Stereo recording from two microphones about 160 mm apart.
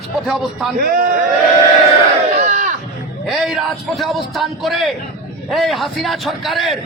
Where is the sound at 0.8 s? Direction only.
65° right (ahead or behind).